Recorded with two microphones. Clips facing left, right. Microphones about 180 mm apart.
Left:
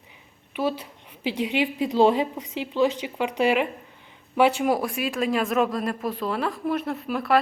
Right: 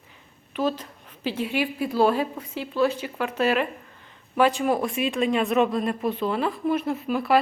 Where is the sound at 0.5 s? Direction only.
10° left (ahead or behind).